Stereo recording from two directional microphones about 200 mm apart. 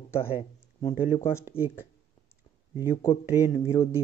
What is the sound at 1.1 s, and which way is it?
Speech, 30° left (ahead or behind).